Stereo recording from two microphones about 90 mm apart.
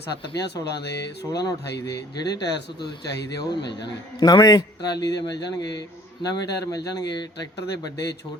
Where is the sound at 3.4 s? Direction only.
55° left (ahead or behind).